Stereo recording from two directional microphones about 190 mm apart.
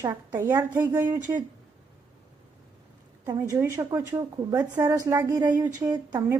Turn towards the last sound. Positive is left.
turn(degrees=-15)  # may be behind; listen again after turning